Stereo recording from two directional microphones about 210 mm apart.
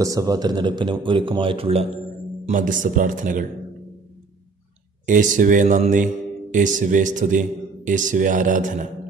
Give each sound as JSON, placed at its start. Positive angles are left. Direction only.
{"t": 0.0, "sound": "a man's voice", "side_deg": -15}
{"t": 2.4, "sound": "a man's voice", "side_deg": -40}
{"t": 5.0, "sound": "a man's voice", "side_deg": -40}